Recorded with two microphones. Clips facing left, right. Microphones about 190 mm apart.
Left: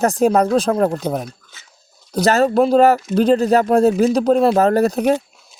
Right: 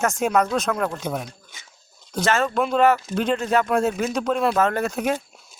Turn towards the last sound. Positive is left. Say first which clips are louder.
# left 8 dB
turn(degrees=35)  # may be behind; listen again after turning